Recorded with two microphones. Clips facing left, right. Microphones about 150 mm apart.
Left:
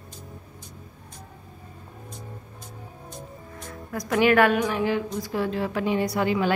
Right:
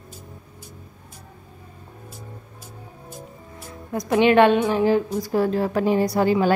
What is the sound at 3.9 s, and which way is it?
A woman's voice, 25° right (ahead or behind).